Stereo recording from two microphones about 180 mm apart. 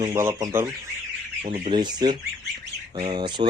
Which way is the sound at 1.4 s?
40° right (ahead or behind).